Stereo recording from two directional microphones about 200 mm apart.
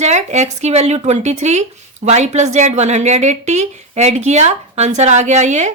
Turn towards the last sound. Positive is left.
turn(degrees=-35)  # may be behind; listen again after turning